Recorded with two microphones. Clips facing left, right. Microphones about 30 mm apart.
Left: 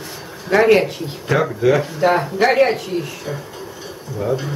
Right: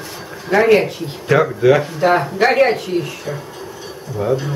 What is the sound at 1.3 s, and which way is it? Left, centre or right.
Speech, centre.